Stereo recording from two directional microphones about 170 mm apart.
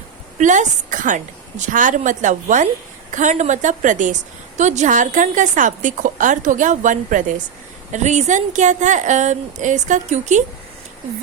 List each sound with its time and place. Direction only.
0.3 s a woman's voice: 45° right (ahead or behind)